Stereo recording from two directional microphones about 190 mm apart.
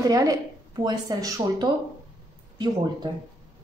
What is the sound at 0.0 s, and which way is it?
Speech, 20° right (ahead or behind).